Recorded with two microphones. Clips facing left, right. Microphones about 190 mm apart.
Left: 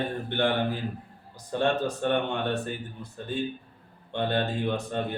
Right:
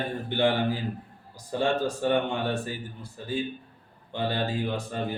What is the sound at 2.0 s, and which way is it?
Speech, 10° right (ahead or behind).